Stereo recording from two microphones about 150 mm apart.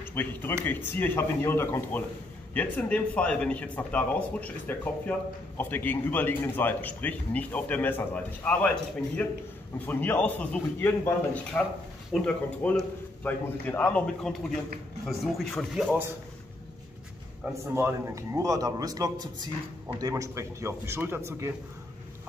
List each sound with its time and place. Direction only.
0.1 s speech: 10° left (ahead or behind)
17.7 s a man's voice: 15° right (ahead or behind)